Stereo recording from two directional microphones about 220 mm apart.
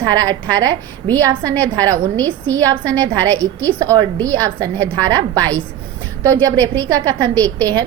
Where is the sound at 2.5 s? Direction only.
15° right (ahead or behind).